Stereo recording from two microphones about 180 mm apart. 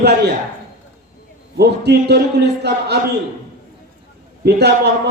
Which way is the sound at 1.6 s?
65° right (ahead or behind).